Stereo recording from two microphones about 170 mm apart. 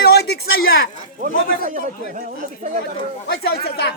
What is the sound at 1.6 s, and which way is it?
Speech, 55° right (ahead or behind).